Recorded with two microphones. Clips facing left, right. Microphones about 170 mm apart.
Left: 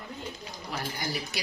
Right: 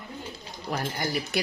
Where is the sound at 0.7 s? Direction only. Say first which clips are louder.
Right 5 dB; 45° right (ahead or behind).